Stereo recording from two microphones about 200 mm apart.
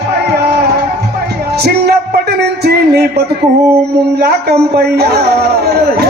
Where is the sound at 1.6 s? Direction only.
55° right (ahead or behind).